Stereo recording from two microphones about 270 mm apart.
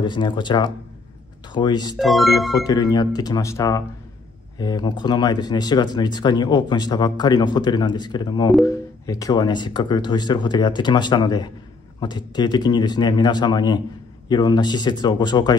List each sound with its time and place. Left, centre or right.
0.0 s speech: centre
2.0 s speech: centre
2.6 s speech: centre